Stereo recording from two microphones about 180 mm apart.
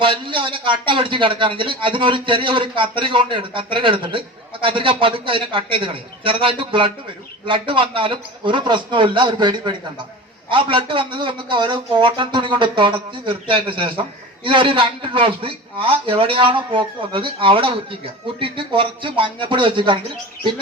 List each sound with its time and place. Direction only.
0.0 s a man's voice: 30° right (ahead or behind)